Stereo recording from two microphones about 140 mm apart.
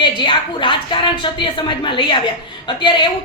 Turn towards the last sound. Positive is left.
turn(degrees=35)  # may be behind; listen again after turning